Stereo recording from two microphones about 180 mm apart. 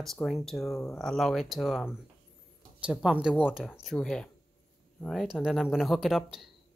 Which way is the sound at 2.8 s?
5° right (ahead or behind).